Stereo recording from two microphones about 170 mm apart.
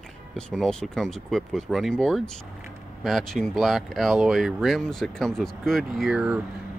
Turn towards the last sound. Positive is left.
turn(degrees=-5)  # may be behind; listen again after turning